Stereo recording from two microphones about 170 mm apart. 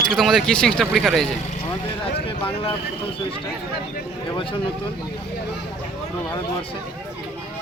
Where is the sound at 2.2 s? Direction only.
30° left (ahead or behind).